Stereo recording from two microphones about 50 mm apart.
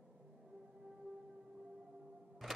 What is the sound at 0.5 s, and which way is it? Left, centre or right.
Music, centre.